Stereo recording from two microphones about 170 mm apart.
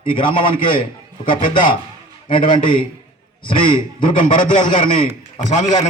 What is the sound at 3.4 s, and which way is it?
Speech, 30° left (ahead or behind).